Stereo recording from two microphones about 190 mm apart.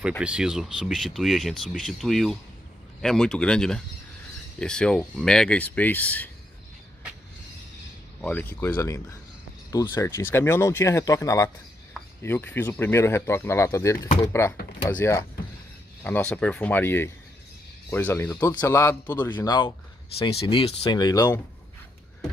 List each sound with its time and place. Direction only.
0.2 s speech: 5° right (ahead or behind)
8.2 s speech: 10° left (ahead or behind)
19.4 s speech: 20° left (ahead or behind)